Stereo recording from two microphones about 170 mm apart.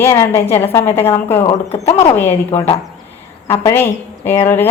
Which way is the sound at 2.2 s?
15° left (ahead or behind).